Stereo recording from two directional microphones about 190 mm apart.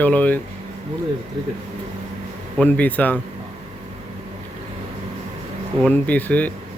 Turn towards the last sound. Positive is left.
turn(degrees=10)  # may be behind; listen again after turning